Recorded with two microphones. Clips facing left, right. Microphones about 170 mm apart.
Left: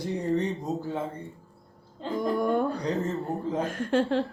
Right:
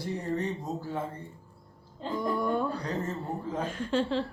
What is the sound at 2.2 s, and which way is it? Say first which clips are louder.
A woman's voice: left 4 dB; 55° left (ahead or behind).